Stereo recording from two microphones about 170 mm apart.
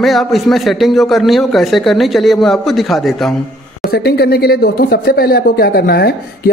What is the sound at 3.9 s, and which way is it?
Speech, 70° left (ahead or behind).